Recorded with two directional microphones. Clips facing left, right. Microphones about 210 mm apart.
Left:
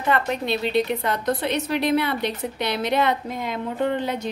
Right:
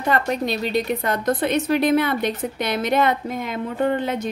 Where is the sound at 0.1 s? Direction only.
40° right (ahead or behind).